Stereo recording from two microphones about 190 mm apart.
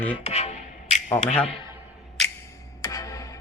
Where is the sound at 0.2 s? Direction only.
35° left (ahead or behind).